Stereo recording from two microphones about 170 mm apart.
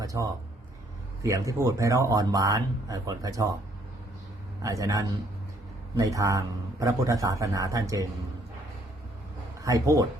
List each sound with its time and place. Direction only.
0.0 s speech: 20° right (ahead or behind)
4.6 s speech: 20° right (ahead or behind)
9.6 s speech: 20° right (ahead or behind)